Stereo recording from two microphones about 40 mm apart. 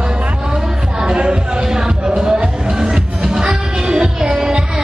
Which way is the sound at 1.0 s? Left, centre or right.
Right.